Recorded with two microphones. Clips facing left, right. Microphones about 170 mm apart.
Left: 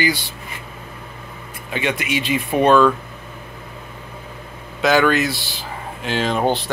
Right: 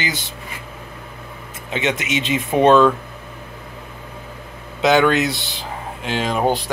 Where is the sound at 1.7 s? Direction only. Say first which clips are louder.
Right 1 dB; 20° right (ahead or behind).